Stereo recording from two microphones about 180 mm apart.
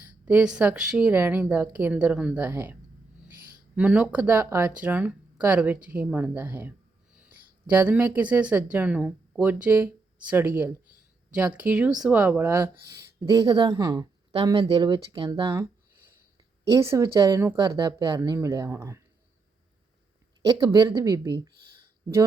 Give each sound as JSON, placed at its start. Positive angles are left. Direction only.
{"t": 0.0, "sound": "speech", "side_deg": -10}
{"t": 16.6, "sound": "speech", "side_deg": -15}
{"t": 20.4, "sound": "speech", "side_deg": -20}